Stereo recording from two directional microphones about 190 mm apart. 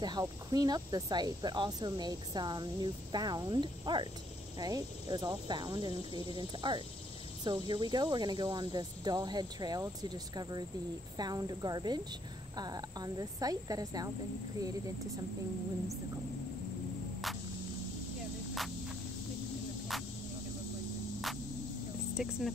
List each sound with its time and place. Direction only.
0.0 s speech: 20° right (ahead or behind)
22.1 s speech: centre (ahead or behind)